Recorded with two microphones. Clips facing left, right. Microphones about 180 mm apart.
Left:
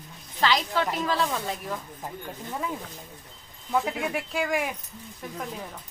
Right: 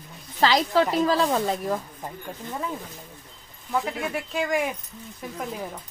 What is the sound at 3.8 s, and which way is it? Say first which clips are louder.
Speech: even; 10° left (ahead or behind).